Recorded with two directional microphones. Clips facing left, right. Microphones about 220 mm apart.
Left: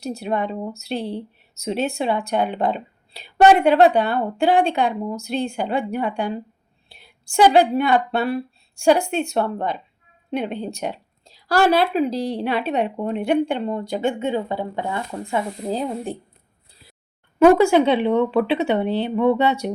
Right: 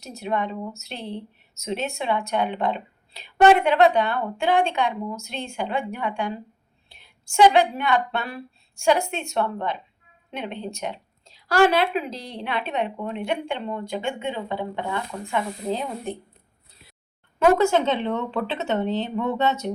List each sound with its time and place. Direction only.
0.0 s speech: 35° left (ahead or behind)
6.8 s a sound: 35° left (ahead or behind)
7.5 s speech: 35° left (ahead or behind)
17.4 s speech: 10° left (ahead or behind)